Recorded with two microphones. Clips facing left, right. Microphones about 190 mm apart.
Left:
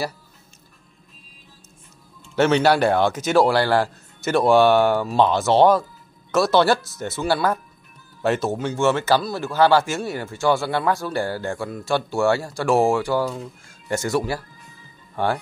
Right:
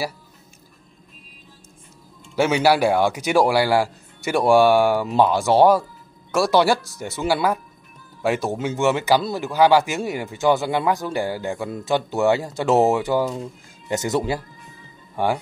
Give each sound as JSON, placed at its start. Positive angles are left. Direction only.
{"t": 2.3, "sound": "speech", "side_deg": -10}